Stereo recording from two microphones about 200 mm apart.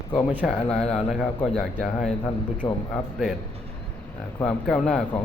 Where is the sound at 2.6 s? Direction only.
25° left (ahead or behind).